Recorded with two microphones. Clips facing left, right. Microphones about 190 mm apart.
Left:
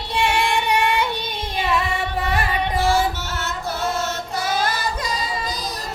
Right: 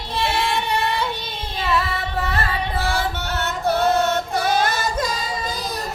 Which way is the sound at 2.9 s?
60° right (ahead or behind).